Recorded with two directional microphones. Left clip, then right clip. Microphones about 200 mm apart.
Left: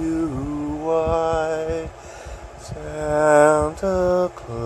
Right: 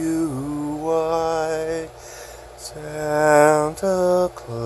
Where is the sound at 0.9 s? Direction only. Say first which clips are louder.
Left 1 dB; 15° right (ahead or behind).